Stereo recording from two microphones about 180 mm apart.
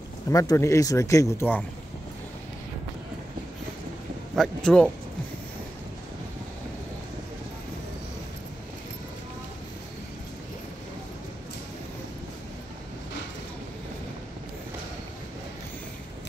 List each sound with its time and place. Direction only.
0.3 s speech: 20° left (ahead or behind)
4.6 s speech: 5° left (ahead or behind)